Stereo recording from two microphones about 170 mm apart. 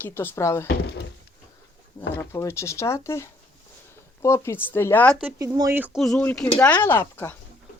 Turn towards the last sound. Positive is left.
turn(degrees=15)  # may be behind; listen again after turning